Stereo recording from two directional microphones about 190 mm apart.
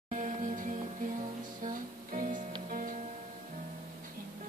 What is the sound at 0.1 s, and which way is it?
Music, 40° right (ahead or behind).